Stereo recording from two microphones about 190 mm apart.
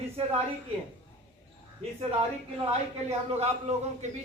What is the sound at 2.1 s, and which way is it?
A man's voice, 30° right (ahead or behind).